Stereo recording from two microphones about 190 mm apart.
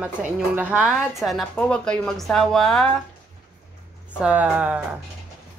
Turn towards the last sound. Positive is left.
turn(degrees=-5)  # may be behind; listen again after turning